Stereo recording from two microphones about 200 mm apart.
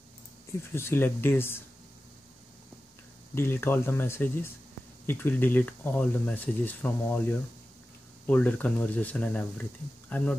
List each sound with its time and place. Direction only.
0.5 s speech: 10° left (ahead or behind)
3.3 s speech: 10° left (ahead or behind)